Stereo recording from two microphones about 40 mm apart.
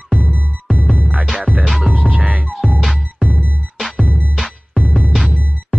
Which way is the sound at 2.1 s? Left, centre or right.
Right.